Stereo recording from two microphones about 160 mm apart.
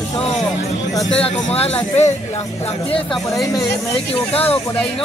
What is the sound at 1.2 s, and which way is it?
Speech, 40° left (ahead or behind).